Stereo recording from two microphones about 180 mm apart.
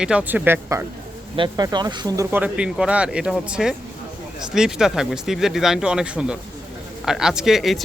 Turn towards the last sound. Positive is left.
turn(degrees=0)  # may be behind; listen again after turning